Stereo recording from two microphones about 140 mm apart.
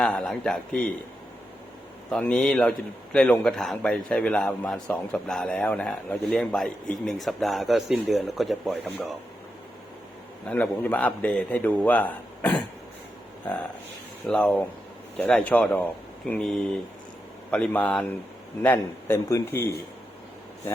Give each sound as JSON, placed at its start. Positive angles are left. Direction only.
{"t": 0.0, "sound": "a man's voice", "side_deg": 5}
{"t": 2.0, "sound": "a man's voice", "side_deg": 5}
{"t": 10.4, "sound": "a man's voice", "side_deg": 10}
{"t": 14.3, "sound": "a man's voice", "side_deg": 10}